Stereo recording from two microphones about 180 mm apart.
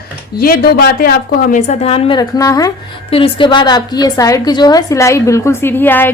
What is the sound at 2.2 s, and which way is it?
Speech, 20° left (ahead or behind).